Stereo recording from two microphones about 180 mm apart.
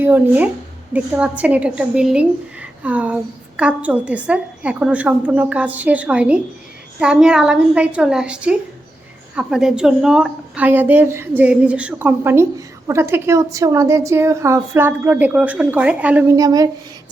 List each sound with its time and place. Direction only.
0.0 s a woman's voice: 10° right (ahead or behind)